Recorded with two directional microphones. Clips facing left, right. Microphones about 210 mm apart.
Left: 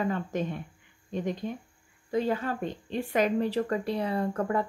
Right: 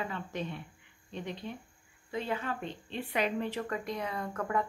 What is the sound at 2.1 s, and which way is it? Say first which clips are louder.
Speech: left 7 dB; 40° left (ahead or behind).